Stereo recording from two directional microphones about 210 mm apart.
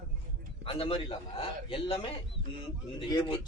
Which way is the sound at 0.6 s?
25° left (ahead or behind).